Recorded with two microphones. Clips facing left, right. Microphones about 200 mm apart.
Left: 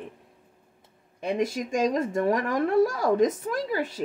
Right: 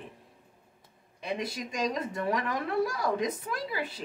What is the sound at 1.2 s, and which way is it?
Speech, 45° left (ahead or behind).